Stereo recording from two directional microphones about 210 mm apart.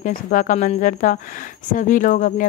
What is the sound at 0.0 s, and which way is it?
Speech, 40° left (ahead or behind).